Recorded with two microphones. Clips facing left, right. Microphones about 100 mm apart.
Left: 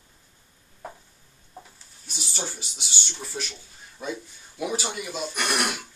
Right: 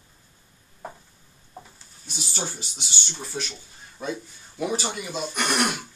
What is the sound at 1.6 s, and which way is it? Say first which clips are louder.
Goat: right 1 dB; centre (ahead or behind).